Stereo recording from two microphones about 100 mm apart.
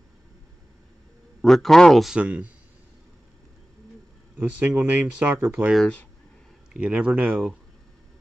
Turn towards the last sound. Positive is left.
turn(degrees=-15)  # may be behind; listen again after turning